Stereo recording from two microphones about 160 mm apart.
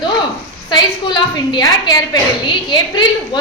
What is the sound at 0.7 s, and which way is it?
A woman's voice, 30° left (ahead or behind).